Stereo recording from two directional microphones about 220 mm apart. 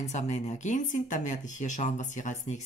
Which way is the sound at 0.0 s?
30° left (ahead or behind).